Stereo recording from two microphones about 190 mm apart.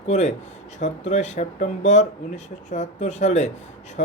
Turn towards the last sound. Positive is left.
turn(degrees=40)  # may be behind; listen again after turning